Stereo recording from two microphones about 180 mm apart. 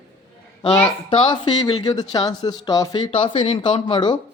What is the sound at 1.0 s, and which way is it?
Speech, 25° left (ahead or behind).